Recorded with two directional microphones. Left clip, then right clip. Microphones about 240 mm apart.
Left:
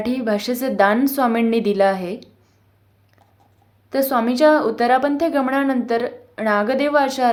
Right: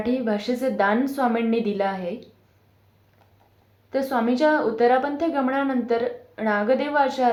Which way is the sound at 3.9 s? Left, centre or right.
Left.